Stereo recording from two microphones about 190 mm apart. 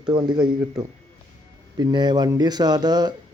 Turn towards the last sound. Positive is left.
turn(degrees=-20)  # may be behind; listen again after turning